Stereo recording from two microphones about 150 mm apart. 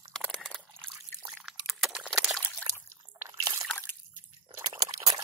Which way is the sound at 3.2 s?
20° right (ahead or behind).